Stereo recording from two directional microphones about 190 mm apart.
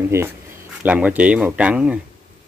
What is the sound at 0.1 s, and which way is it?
Speech, 15° right (ahead or behind).